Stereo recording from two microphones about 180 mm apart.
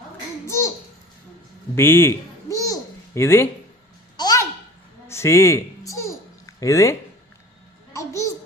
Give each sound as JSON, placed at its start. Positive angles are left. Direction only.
{"t": 0.4, "sound": "babbling", "side_deg": 15}
{"t": 1.7, "sound": "babbling", "side_deg": 15}
{"t": 4.2, "sound": "a sound", "side_deg": 20}
{"t": 5.0, "sound": "babbling", "side_deg": 15}
{"t": 7.9, "sound": "babbling", "side_deg": 15}